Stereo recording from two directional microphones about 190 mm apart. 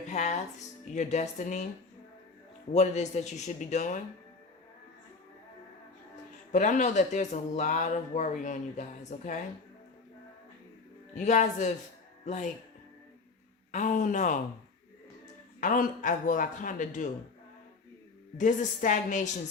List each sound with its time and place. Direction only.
0.1 s music: 40° left (ahead or behind)
0.9 s speech: 40° left (ahead or behind)
2.7 s speech: 35° left (ahead or behind)
6.5 s speech: 40° left (ahead or behind)
11.1 s speech: 40° left (ahead or behind)
13.7 s speech: 40° left (ahead or behind)
15.6 s a man's voice: 45° left (ahead or behind)
18.3 s speech: 40° left (ahead or behind)